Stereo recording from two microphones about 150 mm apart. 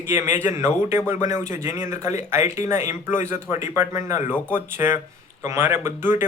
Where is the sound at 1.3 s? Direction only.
55° left (ahead or behind).